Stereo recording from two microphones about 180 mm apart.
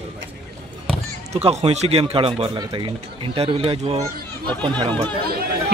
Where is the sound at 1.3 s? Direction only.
35° right (ahead or behind).